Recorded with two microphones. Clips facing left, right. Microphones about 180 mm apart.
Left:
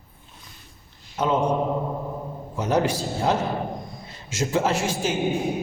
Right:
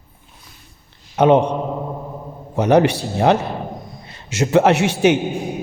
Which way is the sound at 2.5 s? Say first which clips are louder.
Right 8 dB; 70° right (ahead or behind).